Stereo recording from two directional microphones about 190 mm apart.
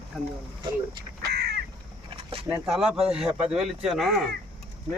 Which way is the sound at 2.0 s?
30° right (ahead or behind).